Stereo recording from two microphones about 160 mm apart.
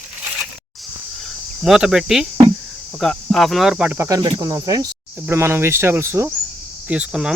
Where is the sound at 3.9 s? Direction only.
20° right (ahead or behind).